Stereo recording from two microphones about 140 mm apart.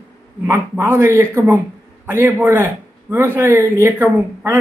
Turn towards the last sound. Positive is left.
turn(degrees=-15)  # may be behind; listen again after turning